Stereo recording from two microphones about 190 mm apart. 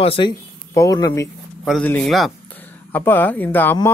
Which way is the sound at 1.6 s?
5° left (ahead or behind).